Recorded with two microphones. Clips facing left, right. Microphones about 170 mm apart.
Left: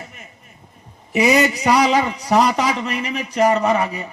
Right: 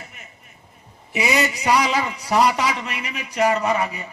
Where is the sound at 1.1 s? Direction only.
35° left (ahead or behind).